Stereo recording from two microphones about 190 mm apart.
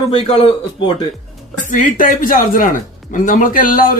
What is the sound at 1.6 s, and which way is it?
Speech, 45° left (ahead or behind).